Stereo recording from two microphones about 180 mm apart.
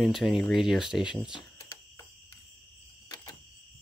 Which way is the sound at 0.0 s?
Centre (ahead or behind).